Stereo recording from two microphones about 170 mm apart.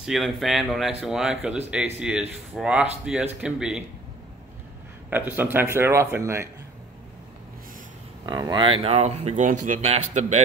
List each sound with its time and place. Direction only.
0.0 s speech: centre (ahead or behind)
5.1 s speech: 10° right (ahead or behind)
8.3 s speech: 25° right (ahead or behind); by 10.4 s 40° right (ahead or behind)